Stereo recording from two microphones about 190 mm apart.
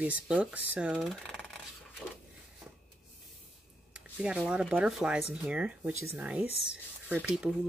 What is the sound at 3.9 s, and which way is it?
Speech, 5° right (ahead or behind).